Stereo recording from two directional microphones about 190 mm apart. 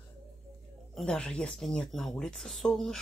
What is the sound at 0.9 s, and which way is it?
Speech, 5° left (ahead or behind).